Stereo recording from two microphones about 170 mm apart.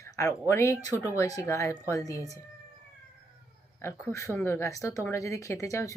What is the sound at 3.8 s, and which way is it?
Speech, 15° left (ahead or behind).